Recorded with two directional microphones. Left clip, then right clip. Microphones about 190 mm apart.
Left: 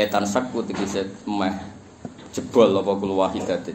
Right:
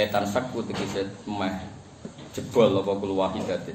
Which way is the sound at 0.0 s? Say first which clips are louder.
Left 3 dB; 45° left (ahead or behind).